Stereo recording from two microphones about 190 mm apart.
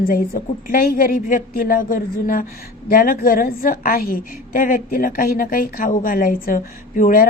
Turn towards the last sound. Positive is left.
turn(degrees=45)  # may be behind; listen again after turning